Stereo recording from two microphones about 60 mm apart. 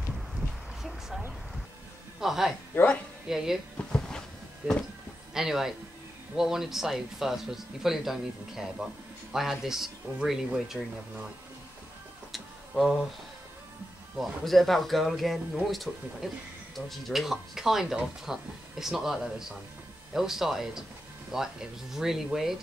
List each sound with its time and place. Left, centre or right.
0.8 s a sound: centre
2.1 s a man's voice: centre
3.8 s insect: centre
5.3 s speech: centre
12.3 s tick-tock: centre
14.1 s speech: centre